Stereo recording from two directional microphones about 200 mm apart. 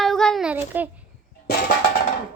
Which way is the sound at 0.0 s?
Centre (ahead or behind).